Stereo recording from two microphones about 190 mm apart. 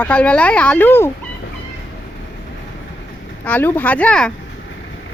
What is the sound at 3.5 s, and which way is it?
Speech, 10° left (ahead or behind).